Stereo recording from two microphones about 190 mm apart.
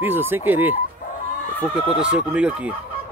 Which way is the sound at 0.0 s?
10° right (ahead or behind).